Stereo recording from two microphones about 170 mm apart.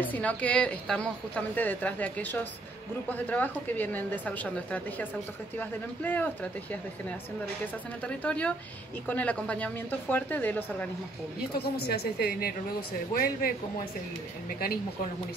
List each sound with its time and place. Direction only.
0.0 s a woman's voice: 10° left (ahead or behind)
11.5 s a man's voice: 70° left (ahead or behind)